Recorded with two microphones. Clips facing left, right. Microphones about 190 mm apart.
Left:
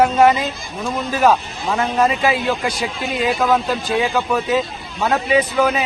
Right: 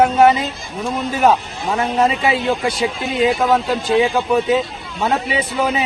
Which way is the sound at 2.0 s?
25° right (ahead or behind).